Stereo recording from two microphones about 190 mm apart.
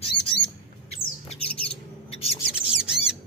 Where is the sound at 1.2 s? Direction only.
30° left (ahead or behind).